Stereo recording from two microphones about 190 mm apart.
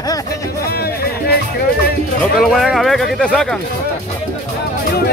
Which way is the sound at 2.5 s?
Centre (ahead or behind).